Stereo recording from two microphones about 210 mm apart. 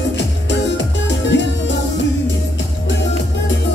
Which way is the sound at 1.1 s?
55° left (ahead or behind).